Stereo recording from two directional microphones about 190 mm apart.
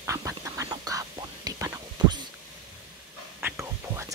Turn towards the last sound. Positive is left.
turn(degrees=-15)  # may be behind; listen again after turning